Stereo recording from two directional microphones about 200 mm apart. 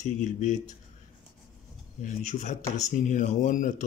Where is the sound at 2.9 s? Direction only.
40° left (ahead or behind).